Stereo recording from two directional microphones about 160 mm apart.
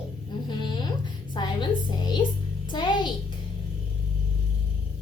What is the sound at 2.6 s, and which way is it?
Music, 30° left (ahead or behind).